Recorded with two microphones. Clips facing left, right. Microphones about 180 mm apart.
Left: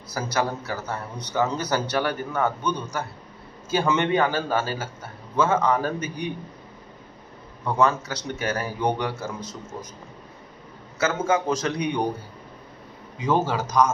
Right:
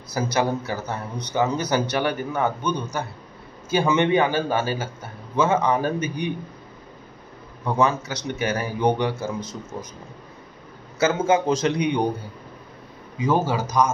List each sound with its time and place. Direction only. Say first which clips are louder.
0.1 s a man's voice: right 3 dB; 20° right (ahead or behind)
7.6 s a man's voice: even; 15° right (ahead or behind)
11.0 s a man's voice: right 3 dB; 25° right (ahead or behind)
13.5 s a man's voice: even; 10° right (ahead or behind)